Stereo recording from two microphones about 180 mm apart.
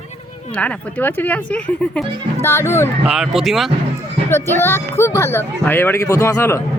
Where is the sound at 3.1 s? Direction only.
Centre (ahead or behind).